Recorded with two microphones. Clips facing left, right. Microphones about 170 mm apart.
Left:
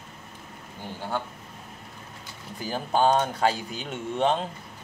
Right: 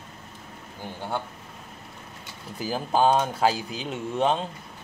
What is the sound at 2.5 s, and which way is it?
Speech, 5° right (ahead or behind).